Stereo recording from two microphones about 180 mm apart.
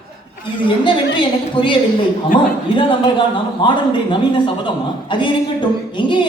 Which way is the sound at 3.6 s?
25° left (ahead or behind).